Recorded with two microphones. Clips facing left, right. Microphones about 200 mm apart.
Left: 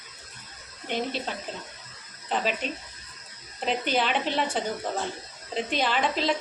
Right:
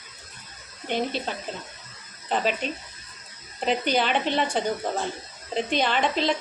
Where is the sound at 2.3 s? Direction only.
Centre (ahead or behind).